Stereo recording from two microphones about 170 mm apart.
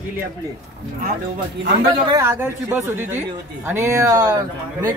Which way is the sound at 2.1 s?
15° right (ahead or behind).